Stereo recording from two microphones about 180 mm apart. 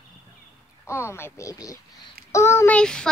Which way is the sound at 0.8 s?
15° left (ahead or behind).